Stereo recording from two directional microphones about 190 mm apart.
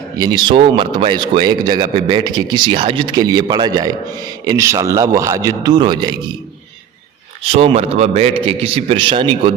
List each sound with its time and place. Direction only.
0.2 s a man's voice: 20° right (ahead or behind)
7.5 s a man's voice: 30° right (ahead or behind)